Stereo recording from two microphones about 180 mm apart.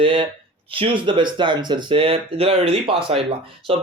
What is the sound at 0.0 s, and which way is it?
Speech, 30° right (ahead or behind).